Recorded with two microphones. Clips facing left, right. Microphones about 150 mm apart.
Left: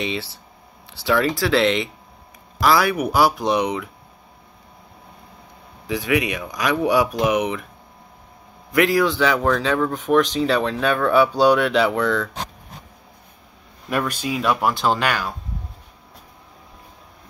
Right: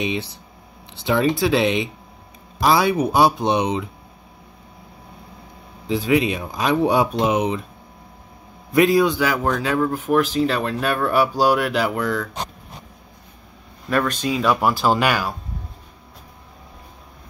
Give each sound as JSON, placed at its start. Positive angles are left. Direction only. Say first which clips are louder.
{"t": 0.0, "sound": "speech", "louder": "right 2 dB", "side_deg": -20}
{"t": 5.9, "sound": "speech", "louder": "right 3 dB", "side_deg": -25}
{"t": 8.7, "sound": "speech", "louder": "right 2 dB", "side_deg": -20}
{"t": 9.2, "sound": "speech", "louder": "left 2 dB", "side_deg": -5}
{"t": 13.8, "sound": "speech", "louder": "right 3 dB", "side_deg": 10}